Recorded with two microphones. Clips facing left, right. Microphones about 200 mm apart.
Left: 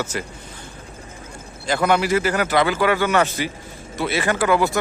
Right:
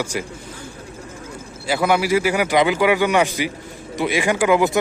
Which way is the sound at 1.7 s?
10° right (ahead or behind).